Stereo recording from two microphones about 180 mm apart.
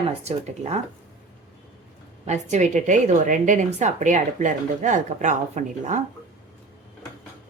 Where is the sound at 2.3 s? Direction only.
40° right (ahead or behind).